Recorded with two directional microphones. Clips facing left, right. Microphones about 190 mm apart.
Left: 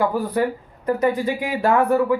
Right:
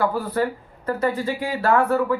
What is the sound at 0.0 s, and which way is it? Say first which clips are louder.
Speech: left 2 dB; 15° left (ahead or behind).